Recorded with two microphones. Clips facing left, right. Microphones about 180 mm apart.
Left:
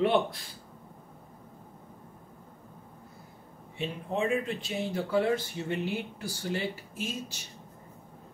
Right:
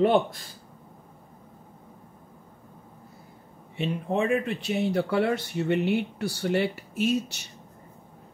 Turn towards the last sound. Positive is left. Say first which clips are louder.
# right 11 dB
turn(degrees=-70)  # may be behind; listen again after turning